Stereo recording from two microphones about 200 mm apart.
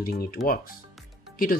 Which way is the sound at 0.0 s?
50° left (ahead or behind).